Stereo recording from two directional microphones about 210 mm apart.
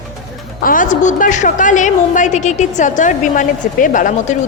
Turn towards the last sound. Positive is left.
turn(degrees=40)  # may be behind; listen again after turning